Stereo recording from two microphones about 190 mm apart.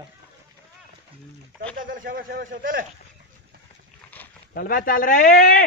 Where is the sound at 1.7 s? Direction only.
45° right (ahead or behind).